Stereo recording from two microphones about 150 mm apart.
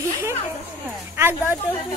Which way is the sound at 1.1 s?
15° right (ahead or behind).